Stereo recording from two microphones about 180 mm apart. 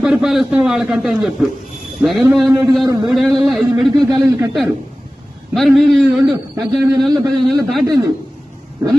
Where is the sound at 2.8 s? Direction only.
20° right (ahead or behind).